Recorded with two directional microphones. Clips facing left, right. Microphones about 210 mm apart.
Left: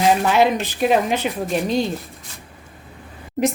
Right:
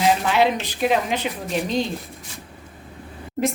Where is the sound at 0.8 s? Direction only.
45° left (ahead or behind).